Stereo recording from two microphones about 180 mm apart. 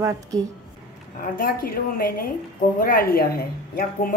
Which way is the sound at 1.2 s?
55° left (ahead or behind).